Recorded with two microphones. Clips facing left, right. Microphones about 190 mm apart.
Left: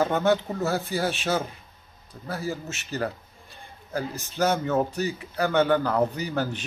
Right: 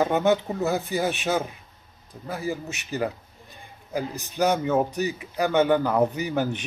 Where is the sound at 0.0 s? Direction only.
15° right (ahead or behind).